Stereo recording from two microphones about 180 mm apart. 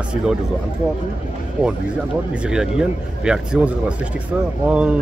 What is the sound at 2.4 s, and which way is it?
Speech, 5° right (ahead or behind).